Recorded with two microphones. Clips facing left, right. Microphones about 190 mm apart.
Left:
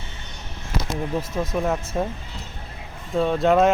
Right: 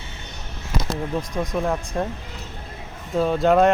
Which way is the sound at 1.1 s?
5° left (ahead or behind).